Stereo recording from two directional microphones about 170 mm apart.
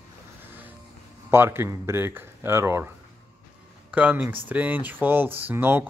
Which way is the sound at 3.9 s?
10° right (ahead or behind).